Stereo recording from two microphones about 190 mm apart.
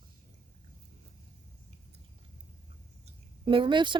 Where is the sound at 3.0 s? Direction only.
25° right (ahead or behind).